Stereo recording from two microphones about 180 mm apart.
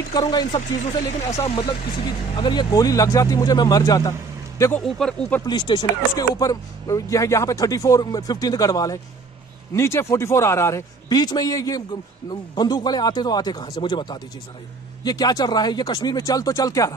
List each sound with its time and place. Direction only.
0.1 s a man's voice: 20° left (ahead or behind)
4.8 s speech: 5° left (ahead or behind)
5.4 s a man's voice: 25° left (ahead or behind)